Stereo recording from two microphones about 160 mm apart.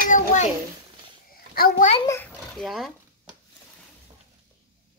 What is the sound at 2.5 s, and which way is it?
Speech, centre (ahead or behind).